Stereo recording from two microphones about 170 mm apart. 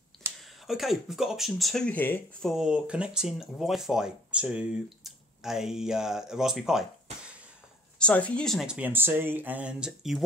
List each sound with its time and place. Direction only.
0.4 s speech: centre (ahead or behind)
2.5 s speech: 5° right (ahead or behind)